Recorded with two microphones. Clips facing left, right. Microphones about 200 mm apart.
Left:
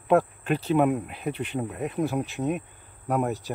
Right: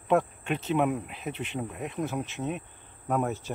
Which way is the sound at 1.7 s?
5° left (ahead or behind).